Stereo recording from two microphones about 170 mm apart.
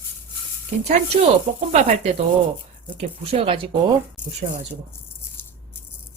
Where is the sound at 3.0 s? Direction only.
35° right (ahead or behind).